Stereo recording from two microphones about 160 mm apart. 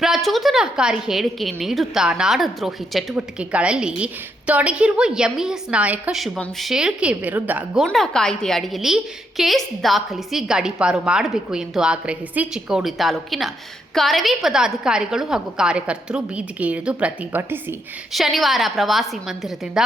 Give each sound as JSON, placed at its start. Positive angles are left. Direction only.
{"t": 0.0, "sound": "a woman's voice", "side_deg": 0}
{"t": 7.9, "sound": "a woman's voice", "side_deg": 5}
{"t": 18.1, "sound": "a woman's voice", "side_deg": 0}